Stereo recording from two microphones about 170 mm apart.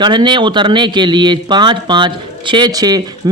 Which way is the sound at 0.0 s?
25° right (ahead or behind).